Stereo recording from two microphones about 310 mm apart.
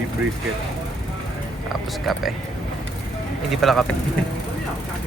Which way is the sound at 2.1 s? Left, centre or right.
Centre.